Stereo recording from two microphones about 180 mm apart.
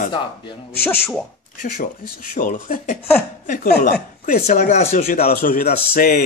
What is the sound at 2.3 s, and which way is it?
Speech, 45° left (ahead or behind).